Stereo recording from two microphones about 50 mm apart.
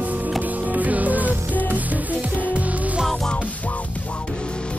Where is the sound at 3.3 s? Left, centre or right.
Left.